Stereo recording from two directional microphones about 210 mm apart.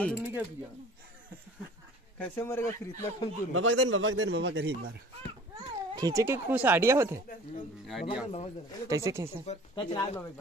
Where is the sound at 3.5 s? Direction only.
70° right (ahead or behind).